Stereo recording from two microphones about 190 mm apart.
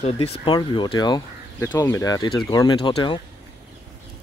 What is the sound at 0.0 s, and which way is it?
Speech, 30° left (ahead or behind).